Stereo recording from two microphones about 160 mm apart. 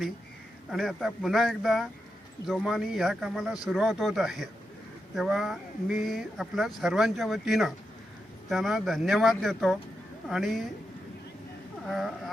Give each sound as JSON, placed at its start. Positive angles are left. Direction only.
{"t": 0.7, "sound": "speech", "side_deg": 0}
{"t": 11.9, "sound": "speech", "side_deg": 0}